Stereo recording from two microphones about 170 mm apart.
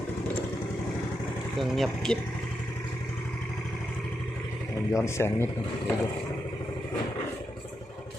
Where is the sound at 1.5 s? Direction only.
Centre (ahead or behind).